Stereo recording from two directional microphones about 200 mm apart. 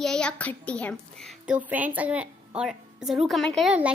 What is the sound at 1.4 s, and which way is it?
Speech, 5° right (ahead or behind).